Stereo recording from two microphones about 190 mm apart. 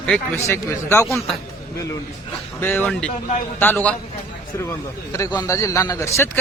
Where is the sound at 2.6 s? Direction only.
10° left (ahead or behind).